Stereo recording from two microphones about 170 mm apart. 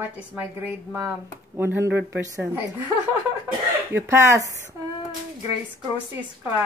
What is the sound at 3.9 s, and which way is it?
Speech, 15° right (ahead or behind).